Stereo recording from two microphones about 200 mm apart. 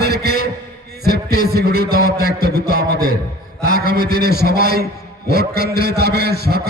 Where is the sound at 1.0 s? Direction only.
50° right (ahead or behind).